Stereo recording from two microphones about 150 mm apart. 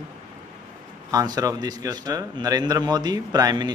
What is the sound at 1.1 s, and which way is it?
A man's voice, 25° right (ahead or behind).